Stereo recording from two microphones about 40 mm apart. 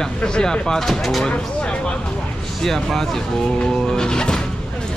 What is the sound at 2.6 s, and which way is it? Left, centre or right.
Speech, centre.